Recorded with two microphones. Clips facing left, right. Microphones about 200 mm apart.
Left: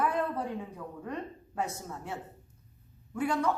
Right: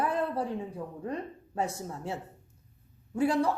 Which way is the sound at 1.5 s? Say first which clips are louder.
Right 3 dB; 30° right (ahead or behind).